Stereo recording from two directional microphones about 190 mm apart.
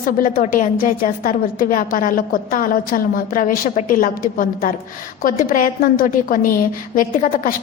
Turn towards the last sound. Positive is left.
turn(degrees=45)  # may be behind; listen again after turning